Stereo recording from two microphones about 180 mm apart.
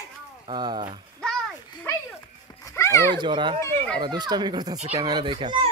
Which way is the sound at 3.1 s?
25° right (ahead or behind).